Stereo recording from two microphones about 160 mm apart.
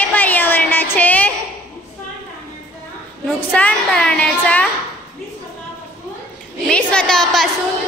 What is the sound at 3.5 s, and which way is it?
A woman's voice, 5° left (ahead or behind).